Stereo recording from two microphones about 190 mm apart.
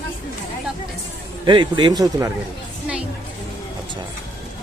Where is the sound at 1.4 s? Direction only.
25° right (ahead or behind).